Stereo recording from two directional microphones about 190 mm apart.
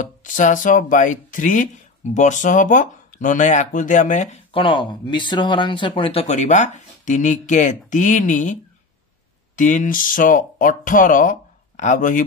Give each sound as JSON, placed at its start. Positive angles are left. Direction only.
{"t": 0.0, "sound": "speech", "side_deg": 45}
{"t": 9.6, "sound": "speech", "side_deg": 45}